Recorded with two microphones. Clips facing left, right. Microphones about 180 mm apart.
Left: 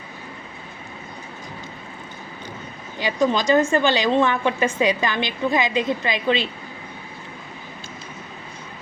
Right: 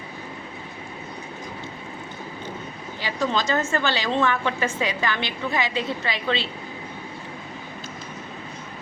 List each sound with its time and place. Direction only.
3.0 s a woman's voice: 15° left (ahead or behind)